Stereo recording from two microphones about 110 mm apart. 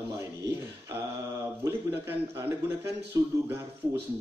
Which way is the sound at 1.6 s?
20° right (ahead or behind).